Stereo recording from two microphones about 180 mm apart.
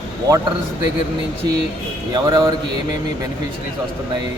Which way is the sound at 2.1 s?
20° right (ahead or behind).